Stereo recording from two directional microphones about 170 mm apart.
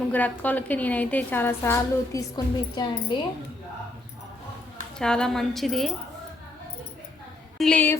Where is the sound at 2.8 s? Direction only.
25° left (ahead or behind).